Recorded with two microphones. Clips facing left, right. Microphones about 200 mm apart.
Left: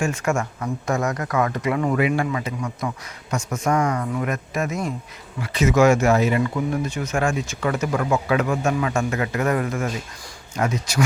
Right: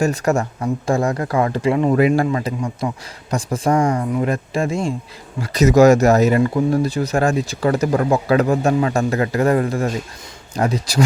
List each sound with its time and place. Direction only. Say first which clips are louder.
0.0 s speech: right 5 dB; 35° right (ahead or behind)
2.0 s speech: right 6 dB; 40° right (ahead or behind)
2.6 s speech: right 4 dB; 25° right (ahead or behind)
5.4 s speech: right 5 dB; 40° right (ahead or behind)